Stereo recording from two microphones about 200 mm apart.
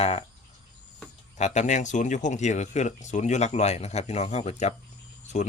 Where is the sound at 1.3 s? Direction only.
35° left (ahead or behind).